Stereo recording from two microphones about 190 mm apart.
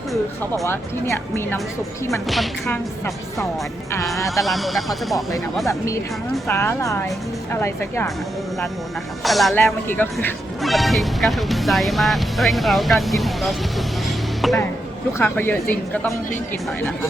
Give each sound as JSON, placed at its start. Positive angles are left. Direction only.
{"t": 0.6, "sound": "a woman's voice", "side_deg": 15}
{"t": 2.2, "sound": "speech", "side_deg": 0}
{"t": 4.4, "sound": "speech", "side_deg": 0}
{"t": 5.6, "sound": "a woman's voice", "side_deg": 15}
{"t": 9.2, "sound": "a woman's voice", "side_deg": 0}
{"t": 15.2, "sound": "a woman's voice", "side_deg": 10}